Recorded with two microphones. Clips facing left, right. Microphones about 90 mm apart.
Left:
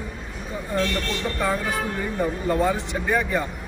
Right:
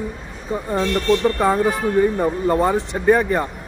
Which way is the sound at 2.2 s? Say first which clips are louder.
Right 4 dB; 40° right (ahead or behind).